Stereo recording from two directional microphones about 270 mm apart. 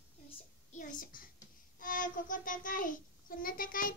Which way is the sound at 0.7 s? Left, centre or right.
Left.